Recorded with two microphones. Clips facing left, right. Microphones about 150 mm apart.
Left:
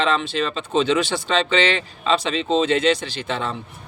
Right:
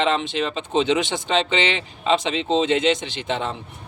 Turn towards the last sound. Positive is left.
turn(degrees=-20)  # may be behind; listen again after turning